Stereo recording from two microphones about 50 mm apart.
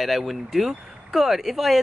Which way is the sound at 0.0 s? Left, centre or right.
Centre.